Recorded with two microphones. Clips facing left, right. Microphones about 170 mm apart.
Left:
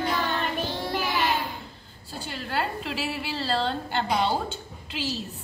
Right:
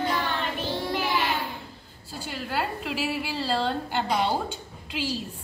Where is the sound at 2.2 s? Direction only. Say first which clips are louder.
Even; 10° right (ahead or behind).